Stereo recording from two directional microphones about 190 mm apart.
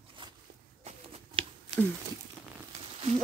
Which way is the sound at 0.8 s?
30° right (ahead or behind).